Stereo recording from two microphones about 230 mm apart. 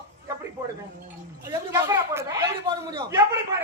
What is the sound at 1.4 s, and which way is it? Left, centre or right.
A woman's voice, centre.